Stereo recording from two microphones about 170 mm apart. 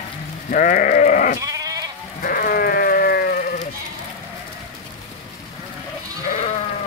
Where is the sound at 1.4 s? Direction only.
20° right (ahead or behind).